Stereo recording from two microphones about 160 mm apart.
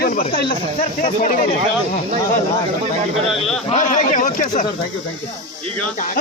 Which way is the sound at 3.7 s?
50° left (ahead or behind).